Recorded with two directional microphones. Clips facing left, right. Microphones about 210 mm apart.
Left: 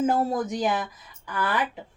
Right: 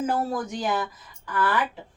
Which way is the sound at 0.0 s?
20° left (ahead or behind).